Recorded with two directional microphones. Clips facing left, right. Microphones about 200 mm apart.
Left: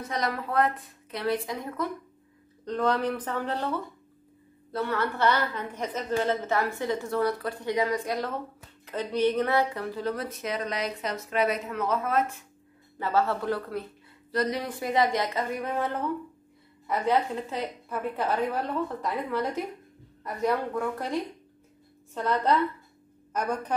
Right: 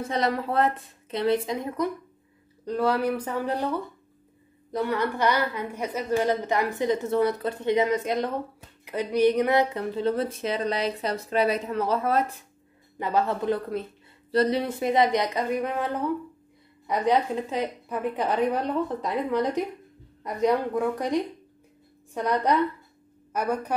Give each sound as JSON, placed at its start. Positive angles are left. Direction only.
{"t": 0.0, "sound": "speech", "side_deg": -30}
{"t": 2.6, "sound": "a woman's voice", "side_deg": -10}
{"t": 13.0, "sound": "a woman's voice", "side_deg": -15}